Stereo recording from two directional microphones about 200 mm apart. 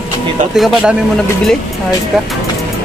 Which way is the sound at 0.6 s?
Centre (ahead or behind).